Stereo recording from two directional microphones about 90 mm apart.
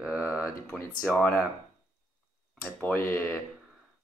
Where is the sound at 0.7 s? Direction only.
Centre (ahead or behind).